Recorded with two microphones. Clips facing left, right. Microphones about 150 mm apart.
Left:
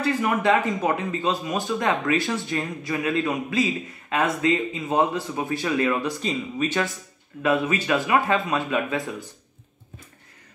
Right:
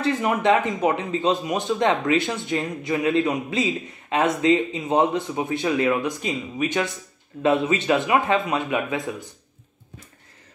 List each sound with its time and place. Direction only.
0.0 s speech: 20° right (ahead or behind)